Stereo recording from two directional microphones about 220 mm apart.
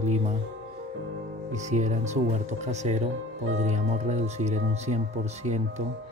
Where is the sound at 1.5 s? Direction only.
30° right (ahead or behind).